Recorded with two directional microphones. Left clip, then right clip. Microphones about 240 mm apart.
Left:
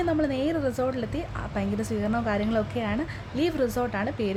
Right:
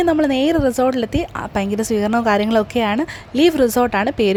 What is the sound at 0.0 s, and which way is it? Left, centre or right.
A woman's voice, right.